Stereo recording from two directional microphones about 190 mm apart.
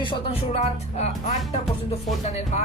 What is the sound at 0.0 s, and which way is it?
Speech, 30° left (ahead or behind).